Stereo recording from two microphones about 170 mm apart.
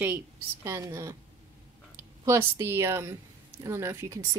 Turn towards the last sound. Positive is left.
turn(degrees=-15)  # may be behind; listen again after turning